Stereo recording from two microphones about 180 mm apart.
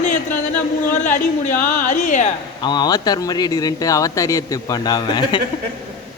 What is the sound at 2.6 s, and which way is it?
Speech, 25° left (ahead or behind).